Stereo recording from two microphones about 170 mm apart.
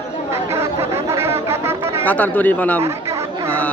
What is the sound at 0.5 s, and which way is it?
Chatter, 15° right (ahead or behind).